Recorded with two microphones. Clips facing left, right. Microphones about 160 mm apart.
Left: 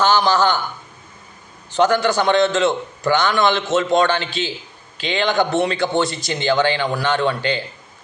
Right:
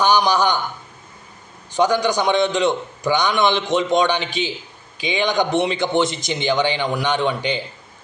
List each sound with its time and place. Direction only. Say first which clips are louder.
0.0 s a man's voice: left 1 dB; 15° right (ahead or behind)
1.7 s a man's voice: left 1 dB; 15° right (ahead or behind)